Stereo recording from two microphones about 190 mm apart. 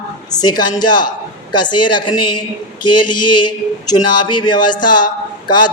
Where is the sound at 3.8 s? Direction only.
20° left (ahead or behind).